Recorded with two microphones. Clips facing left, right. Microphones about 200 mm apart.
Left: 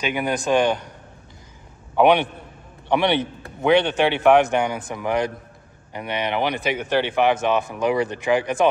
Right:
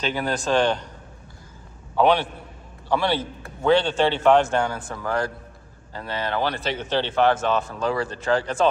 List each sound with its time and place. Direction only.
0.0 s speech: 15° left (ahead or behind)
2.0 s a man's voice: 15° left (ahead or behind)